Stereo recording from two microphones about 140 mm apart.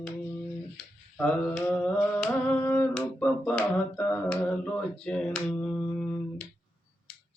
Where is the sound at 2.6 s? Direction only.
15° left (ahead or behind).